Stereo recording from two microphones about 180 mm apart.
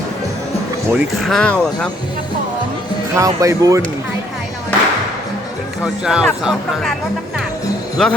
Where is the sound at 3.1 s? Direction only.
15° right (ahead or behind).